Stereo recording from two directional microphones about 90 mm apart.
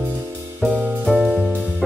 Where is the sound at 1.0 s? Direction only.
Centre (ahead or behind).